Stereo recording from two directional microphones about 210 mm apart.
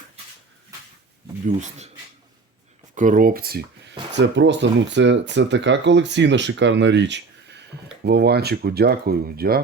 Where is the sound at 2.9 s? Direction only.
35° right (ahead or behind).